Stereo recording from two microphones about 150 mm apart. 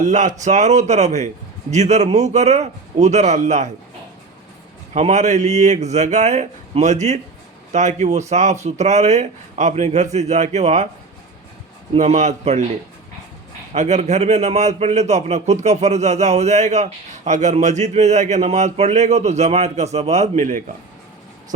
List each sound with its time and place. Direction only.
0.0 s a man's voice: 55° right (ahead or behind)
4.9 s a man's voice: 50° right (ahead or behind)
11.9 s a man's voice: 50° right (ahead or behind)
13.7 s a man's voice: 50° right (ahead or behind)